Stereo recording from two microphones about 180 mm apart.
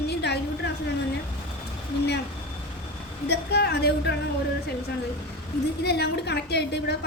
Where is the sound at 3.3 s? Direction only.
65° left (ahead or behind).